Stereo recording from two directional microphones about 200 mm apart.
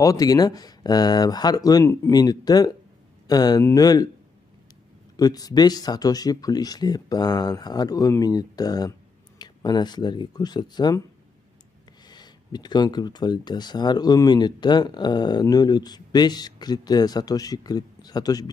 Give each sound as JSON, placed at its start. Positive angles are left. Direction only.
{"t": 0.0, "sound": "speech", "side_deg": 15}
{"t": 5.1, "sound": "speech", "side_deg": 20}
{"t": 12.1, "sound": "speech", "side_deg": 20}